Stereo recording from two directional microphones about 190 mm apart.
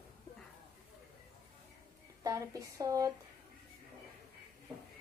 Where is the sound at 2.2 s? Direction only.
15° right (ahead or behind).